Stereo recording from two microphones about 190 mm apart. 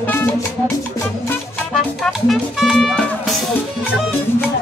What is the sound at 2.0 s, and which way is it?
Speech, centre (ahead or behind).